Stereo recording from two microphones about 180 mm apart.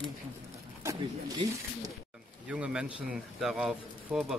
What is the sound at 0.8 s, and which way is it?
Speech, 20° right (ahead or behind).